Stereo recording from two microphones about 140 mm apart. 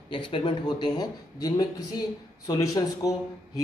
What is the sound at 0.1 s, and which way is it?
Speech, 35° left (ahead or behind).